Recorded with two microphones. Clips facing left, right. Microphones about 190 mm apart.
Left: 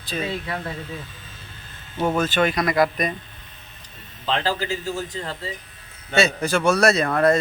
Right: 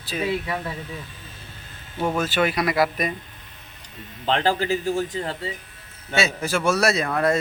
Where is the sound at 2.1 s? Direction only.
5° right (ahead or behind).